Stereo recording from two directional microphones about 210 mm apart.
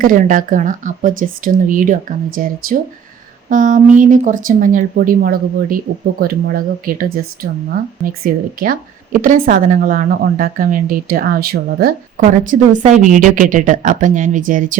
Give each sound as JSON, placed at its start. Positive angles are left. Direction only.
{"t": 0.0, "sound": "speech", "side_deg": -40}